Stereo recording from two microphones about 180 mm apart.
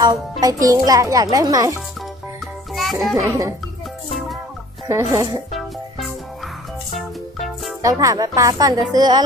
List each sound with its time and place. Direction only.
0.0 s speech: 20° right (ahead or behind)
2.0 s music: centre (ahead or behind)
3.2 s speech: 15° right (ahead or behind)
4.8 s speech: 15° right (ahead or behind)
5.5 s music: centre (ahead or behind)
7.8 s speech: 20° right (ahead or behind)